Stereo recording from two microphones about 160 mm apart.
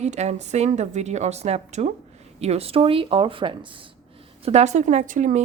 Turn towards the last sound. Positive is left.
turn(degrees=-50)  # may be behind; listen again after turning